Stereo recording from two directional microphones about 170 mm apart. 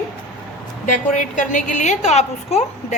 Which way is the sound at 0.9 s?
50° left (ahead or behind).